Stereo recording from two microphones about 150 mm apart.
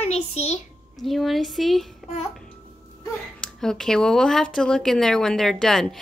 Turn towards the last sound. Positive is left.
turn(degrees=5)  # may be behind; listen again after turning